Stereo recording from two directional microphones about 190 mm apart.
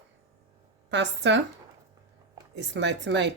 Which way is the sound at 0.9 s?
65° right (ahead or behind).